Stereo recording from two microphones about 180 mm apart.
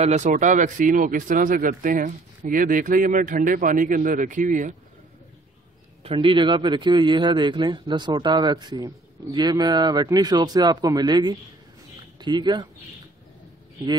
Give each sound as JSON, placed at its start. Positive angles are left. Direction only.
{"t": 0.0, "sound": "speech", "side_deg": -40}
{"t": 6.0, "sound": "a man's voice", "side_deg": -30}